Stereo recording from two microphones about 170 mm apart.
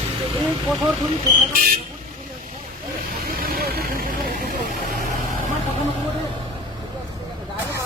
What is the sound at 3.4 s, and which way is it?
Vehicle, 60° right (ahead or behind).